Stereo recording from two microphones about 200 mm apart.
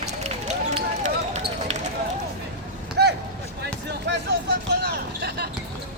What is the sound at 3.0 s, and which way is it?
Vehicle, 55° right (ahead or behind).